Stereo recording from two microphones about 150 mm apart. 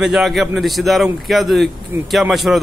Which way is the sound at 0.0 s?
Centre (ahead or behind).